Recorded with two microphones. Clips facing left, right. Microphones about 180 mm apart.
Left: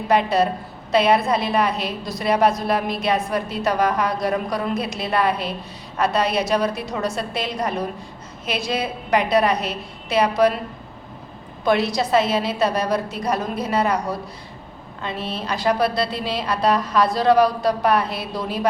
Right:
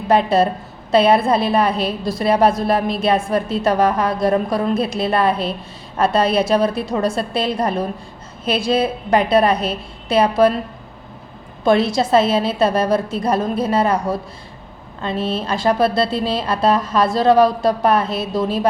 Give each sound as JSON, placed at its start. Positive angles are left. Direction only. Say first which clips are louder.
{"t": 0.1, "sound": "a woman's voice", "louder": "right 4 dB", "side_deg": -30}
{"t": 11.6, "sound": "a woman's voice", "louder": "right 4 dB", "side_deg": -25}